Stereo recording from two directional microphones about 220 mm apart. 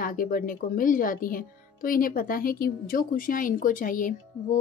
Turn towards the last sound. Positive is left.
turn(degrees=40)  # may be behind; listen again after turning